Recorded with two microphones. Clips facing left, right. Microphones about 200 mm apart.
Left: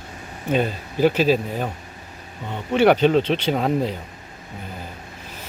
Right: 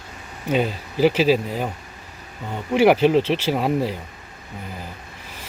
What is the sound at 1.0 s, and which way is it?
Speech, 10° right (ahead or behind).